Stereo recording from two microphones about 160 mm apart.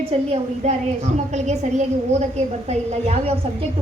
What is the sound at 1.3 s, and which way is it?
A woman's voice, 45° right (ahead or behind).